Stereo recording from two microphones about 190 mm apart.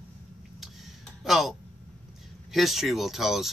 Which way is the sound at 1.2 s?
Centre (ahead or behind).